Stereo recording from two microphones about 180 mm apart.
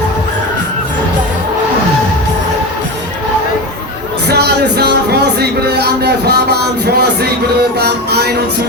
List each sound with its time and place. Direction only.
4.3 s music: 65° right (ahead or behind)